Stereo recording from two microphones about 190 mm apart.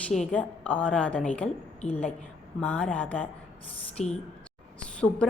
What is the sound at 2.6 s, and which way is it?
Speech, 5° left (ahead or behind).